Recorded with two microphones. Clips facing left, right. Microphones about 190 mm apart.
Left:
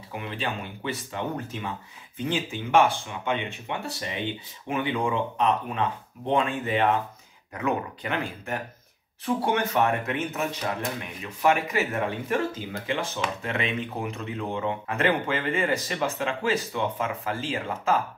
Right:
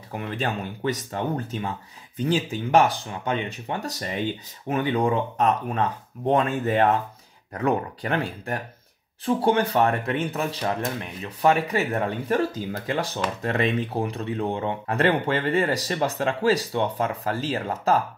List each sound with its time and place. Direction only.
0.1 s speech: 45° right (ahead or behind)